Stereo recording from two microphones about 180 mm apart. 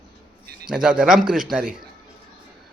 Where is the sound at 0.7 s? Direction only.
5° right (ahead or behind).